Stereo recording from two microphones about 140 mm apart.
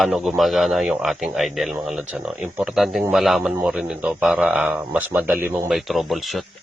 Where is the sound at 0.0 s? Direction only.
Centre (ahead or behind).